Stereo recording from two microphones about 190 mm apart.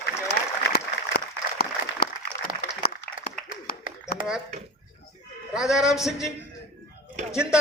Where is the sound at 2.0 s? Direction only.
55° left (ahead or behind).